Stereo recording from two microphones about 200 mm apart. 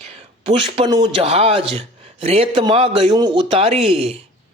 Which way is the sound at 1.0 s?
30° right (ahead or behind).